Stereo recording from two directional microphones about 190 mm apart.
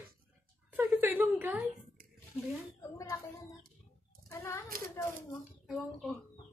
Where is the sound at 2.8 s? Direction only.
15° left (ahead or behind).